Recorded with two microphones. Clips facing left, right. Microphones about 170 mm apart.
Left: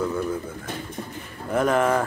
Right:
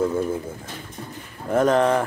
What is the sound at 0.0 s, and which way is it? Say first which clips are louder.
Pigeon: right 3 dB; 25° right (ahead or behind).